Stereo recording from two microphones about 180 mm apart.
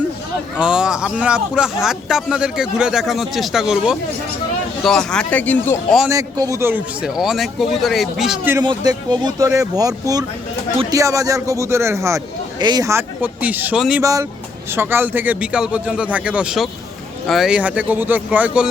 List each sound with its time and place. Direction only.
0.6 s speech: 5° right (ahead or behind)
6.1 s speech: 20° right (ahead or behind); by 8.5 s centre (ahead or behind)
8.6 s a man's voice: 20° right (ahead or behind); by 14.0 s 5° right (ahead or behind)
14.0 s a man's voice: 20° right (ahead or behind)